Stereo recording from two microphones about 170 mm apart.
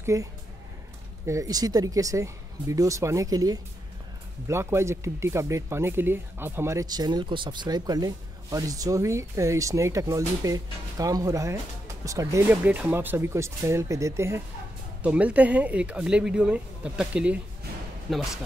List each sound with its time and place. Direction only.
0.0 s speech: 20° right (ahead or behind); by 18.2 s centre (ahead or behind)